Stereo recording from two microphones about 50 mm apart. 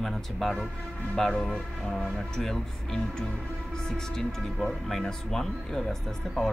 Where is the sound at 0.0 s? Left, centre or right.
Centre.